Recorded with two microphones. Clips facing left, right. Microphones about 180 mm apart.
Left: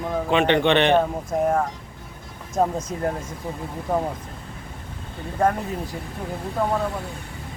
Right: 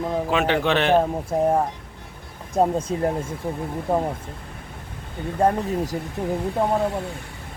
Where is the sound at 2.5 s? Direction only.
30° right (ahead or behind).